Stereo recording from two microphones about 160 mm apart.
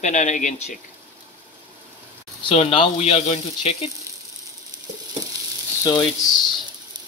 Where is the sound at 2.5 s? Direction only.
40° left (ahead or behind).